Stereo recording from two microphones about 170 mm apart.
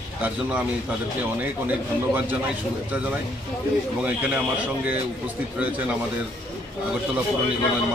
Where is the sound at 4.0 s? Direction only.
5° right (ahead or behind).